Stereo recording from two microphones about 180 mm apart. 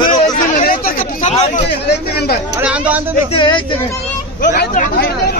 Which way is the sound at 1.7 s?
65° left (ahead or behind).